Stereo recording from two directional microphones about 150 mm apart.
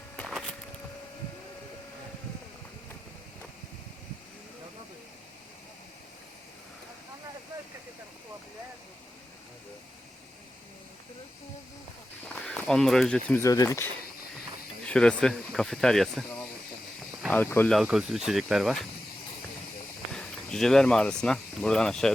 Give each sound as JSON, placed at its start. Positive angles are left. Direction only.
{"t": 12.3, "sound": "speech", "side_deg": 5}
{"t": 13.4, "sound": "speech", "side_deg": 20}
{"t": 17.2, "sound": "speech", "side_deg": 10}
{"t": 17.7, "sound": "speech", "side_deg": -5}
{"t": 20.1, "sound": "speech", "side_deg": 5}